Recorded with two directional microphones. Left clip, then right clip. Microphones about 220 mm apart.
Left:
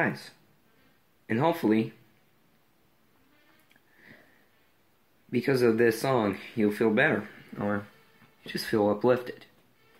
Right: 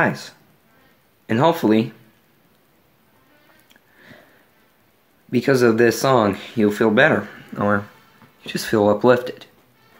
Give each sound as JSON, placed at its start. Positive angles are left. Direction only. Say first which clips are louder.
{"t": 0.0, "sound": "speech", "louder": "right 9 dB", "side_deg": -15}
{"t": 5.3, "sound": "speech", "louder": "right 8 dB", "side_deg": -15}